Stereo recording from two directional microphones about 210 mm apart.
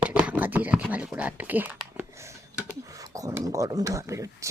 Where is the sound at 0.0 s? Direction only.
5° right (ahead or behind).